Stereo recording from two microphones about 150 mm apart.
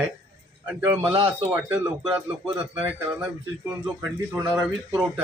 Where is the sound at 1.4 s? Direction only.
15° right (ahead or behind).